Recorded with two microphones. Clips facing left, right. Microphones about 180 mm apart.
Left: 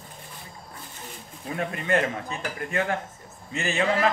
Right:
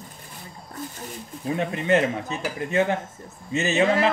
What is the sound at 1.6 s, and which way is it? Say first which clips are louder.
Speech: right 3 dB; 20° right (ahead or behind).